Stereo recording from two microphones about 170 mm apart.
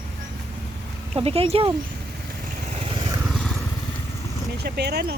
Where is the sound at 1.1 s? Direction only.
35° right (ahead or behind).